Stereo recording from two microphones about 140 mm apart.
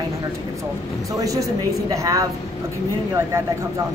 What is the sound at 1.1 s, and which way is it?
A woman's voice, 25° right (ahead or behind).